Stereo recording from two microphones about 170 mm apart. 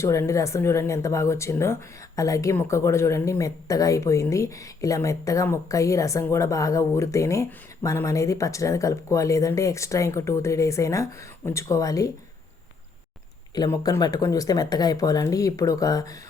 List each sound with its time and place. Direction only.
0.0 s speech: 15° left (ahead or behind)
13.5 s speech: 20° left (ahead or behind)